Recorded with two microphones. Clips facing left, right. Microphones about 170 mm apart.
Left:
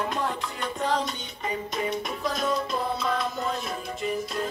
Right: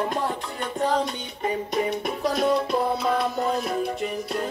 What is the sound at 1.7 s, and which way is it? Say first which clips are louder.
Music: right 4 dB; 60° right (ahead or behind).